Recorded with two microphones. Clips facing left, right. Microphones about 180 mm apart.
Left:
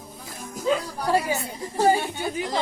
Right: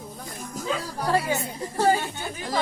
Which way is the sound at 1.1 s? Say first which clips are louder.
Left 1 dB; 15° left (ahead or behind).